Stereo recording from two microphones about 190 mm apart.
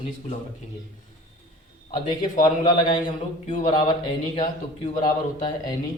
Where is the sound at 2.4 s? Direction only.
20° left (ahead or behind).